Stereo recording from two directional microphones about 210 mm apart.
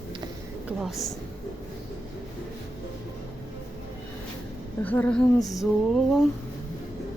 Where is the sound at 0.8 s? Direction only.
Centre (ahead or behind).